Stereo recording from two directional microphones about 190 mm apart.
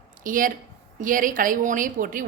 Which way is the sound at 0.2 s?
45° right (ahead or behind).